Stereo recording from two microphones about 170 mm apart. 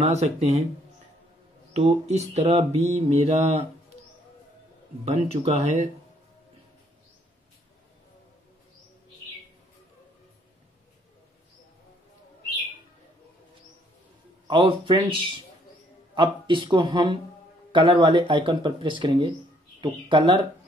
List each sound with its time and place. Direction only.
0.0 s mantra: 40° right (ahead or behind)
1.7 s mantra: 35° right (ahead or behind)
5.0 s mantra: 40° right (ahead or behind)
14.5 s mantra: 30° right (ahead or behind)
16.2 s speech: 30° right (ahead or behind)